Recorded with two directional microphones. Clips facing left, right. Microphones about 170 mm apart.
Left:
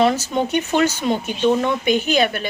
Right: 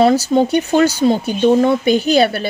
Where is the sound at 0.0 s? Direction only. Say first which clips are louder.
Right 6 dB; 35° right (ahead or behind).